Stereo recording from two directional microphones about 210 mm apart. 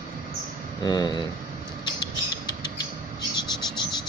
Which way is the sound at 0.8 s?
20° left (ahead or behind).